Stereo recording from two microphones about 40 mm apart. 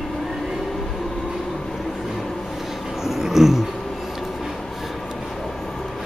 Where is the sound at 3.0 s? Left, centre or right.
Centre.